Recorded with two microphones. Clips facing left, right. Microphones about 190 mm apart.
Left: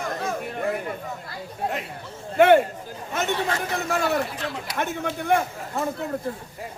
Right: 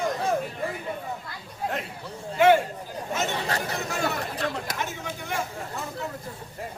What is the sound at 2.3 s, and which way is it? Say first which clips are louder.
Speech: left 3 dB; 55° left (ahead or behind).